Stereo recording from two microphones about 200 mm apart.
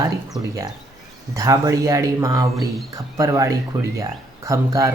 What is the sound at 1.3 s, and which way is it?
Speech, 15° right (ahead or behind).